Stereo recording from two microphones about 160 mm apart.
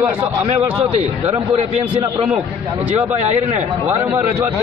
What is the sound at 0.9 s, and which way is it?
A man's voice, 40° right (ahead or behind).